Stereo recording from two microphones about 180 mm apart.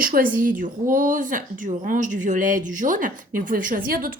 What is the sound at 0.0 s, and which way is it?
A woman's voice, 50° right (ahead or behind).